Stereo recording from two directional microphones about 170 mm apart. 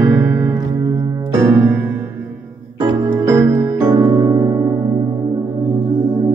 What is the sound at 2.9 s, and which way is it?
Music, 20° right (ahead or behind).